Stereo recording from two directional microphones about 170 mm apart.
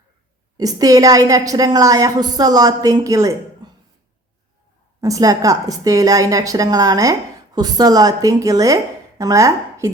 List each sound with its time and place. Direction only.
0.5 s a woman's voice: 20° right (ahead or behind)
4.9 s a woman's voice: 20° right (ahead or behind)